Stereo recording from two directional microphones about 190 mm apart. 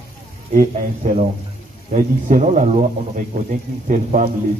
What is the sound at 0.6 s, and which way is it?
Speech, 40° right (ahead or behind).